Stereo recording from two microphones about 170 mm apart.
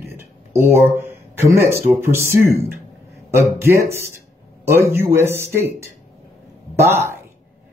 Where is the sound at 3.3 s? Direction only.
15° right (ahead or behind).